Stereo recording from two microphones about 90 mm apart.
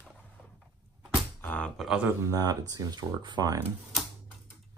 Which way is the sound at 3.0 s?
55° right (ahead or behind).